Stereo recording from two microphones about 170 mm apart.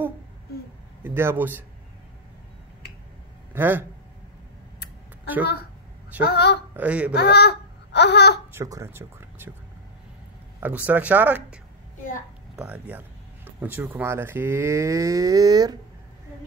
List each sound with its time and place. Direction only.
1.0 s speech: 15° right (ahead or behind)
3.5 s speech: 10° right (ahead or behind)
6.2 s a woman's voice: 75° left (ahead or behind)
6.8 s speech: 5° right (ahead or behind)
7.2 s babbling: 75° left (ahead or behind)
8.5 s speech: 15° right (ahead or behind)
10.6 s speech: 10° right (ahead or behind)